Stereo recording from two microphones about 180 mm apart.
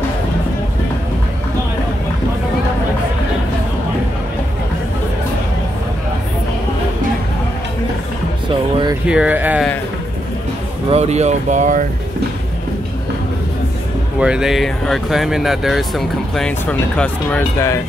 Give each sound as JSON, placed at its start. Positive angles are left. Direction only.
{"t": 9.0, "sound": "speech", "side_deg": -5}
{"t": 10.9, "sound": "speech", "side_deg": -35}
{"t": 14.2, "sound": "speech", "side_deg": -5}